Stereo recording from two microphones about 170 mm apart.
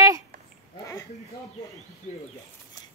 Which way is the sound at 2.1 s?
40° left (ahead or behind).